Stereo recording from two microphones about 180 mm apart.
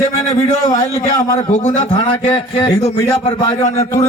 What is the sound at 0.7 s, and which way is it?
Speech, 20° left (ahead or behind).